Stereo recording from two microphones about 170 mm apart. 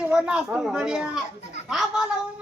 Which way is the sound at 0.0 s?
5° right (ahead or behind).